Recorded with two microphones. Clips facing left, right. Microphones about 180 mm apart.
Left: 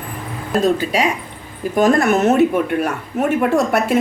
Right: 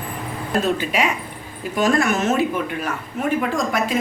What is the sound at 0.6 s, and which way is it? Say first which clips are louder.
Speech: left 6 dB; 35° left (ahead or behind).